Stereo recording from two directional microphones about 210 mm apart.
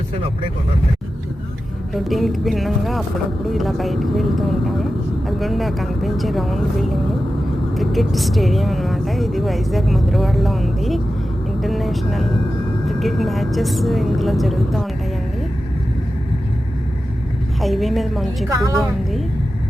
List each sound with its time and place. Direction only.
1.9 s speech: centre (ahead or behind)
17.6 s speech: centre (ahead or behind)
18.4 s a woman's voice: 15° right (ahead or behind)